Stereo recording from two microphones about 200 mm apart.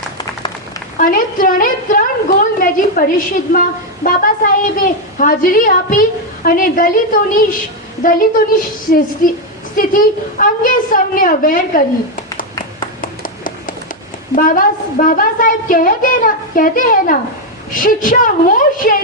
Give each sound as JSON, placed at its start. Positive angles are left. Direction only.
{"t": 0.9, "sound": "a woman's voice", "side_deg": 45}
{"t": 8.9, "sound": "a woman's voice", "side_deg": 45}
{"t": 13.0, "sound": "a sound", "side_deg": 45}
{"t": 14.3, "sound": "a woman's voice", "side_deg": 40}